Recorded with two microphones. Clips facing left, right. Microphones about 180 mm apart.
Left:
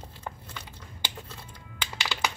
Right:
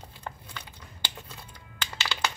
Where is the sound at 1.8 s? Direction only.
10° left (ahead or behind).